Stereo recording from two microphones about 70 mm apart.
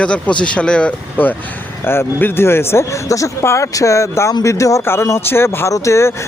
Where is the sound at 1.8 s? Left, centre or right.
Left.